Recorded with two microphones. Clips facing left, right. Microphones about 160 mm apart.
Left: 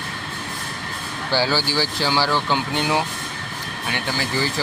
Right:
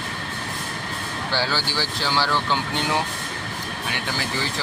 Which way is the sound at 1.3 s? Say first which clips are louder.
Left 5 dB; 5° left (ahead or behind).